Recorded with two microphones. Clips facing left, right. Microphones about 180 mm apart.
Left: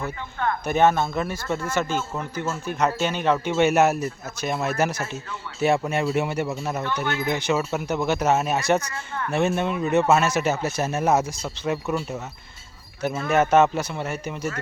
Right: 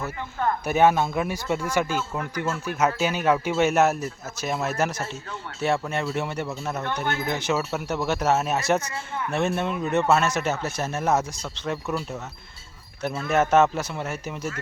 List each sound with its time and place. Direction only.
0.6 s a man's voice: 10° right (ahead or behind); by 6.8 s 5° left (ahead or behind)
6.8 s speech: 45° right (ahead or behind)
7.3 s speech: centre (ahead or behind)